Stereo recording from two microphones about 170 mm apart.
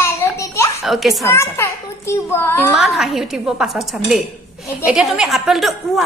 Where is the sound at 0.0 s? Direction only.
15° left (ahead or behind).